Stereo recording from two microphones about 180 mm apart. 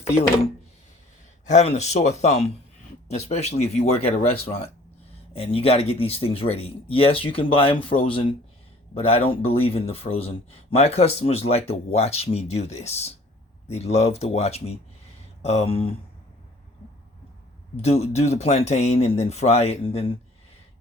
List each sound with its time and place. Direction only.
1.5 s speech: 40° left (ahead or behind)
5.3 s speech: 30° left (ahead or behind)
17.8 s speech: 35° left (ahead or behind)